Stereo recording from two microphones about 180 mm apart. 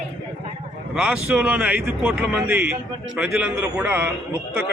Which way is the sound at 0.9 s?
5° right (ahead or behind).